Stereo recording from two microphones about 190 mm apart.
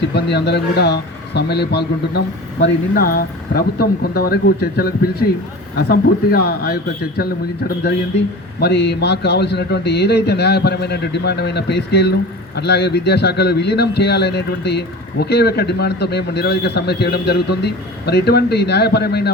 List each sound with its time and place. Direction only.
0.1 s a man's voice: 60° left (ahead or behind)
8.6 s a man's voice: 60° left (ahead or behind)